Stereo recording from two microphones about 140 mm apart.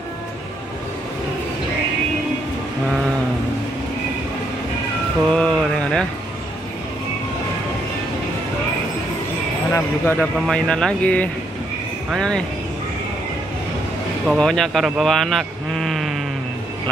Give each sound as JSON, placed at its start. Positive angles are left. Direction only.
{"t": 5.3, "sound": "mantra", "side_deg": 5}
{"t": 9.7, "sound": "speech", "side_deg": 15}
{"t": 14.2, "sound": "speech", "side_deg": 0}